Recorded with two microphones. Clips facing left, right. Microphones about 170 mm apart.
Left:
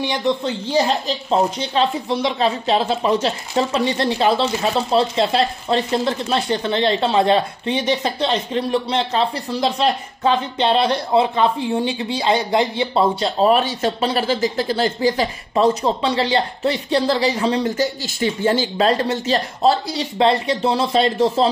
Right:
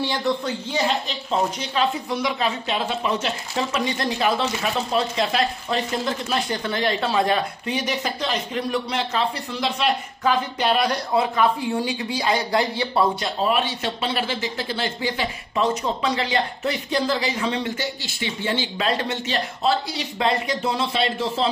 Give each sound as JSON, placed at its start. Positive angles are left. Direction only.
{"t": 0.0, "sound": "speech", "side_deg": 20}
{"t": 0.7, "sound": "speech", "side_deg": 35}
{"t": 13.4, "sound": "speech", "side_deg": 40}